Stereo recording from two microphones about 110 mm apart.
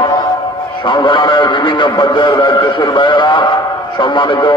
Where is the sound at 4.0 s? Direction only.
45° left (ahead or behind).